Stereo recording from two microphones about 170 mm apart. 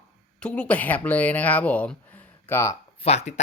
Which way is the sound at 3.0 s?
40° left (ahead or behind).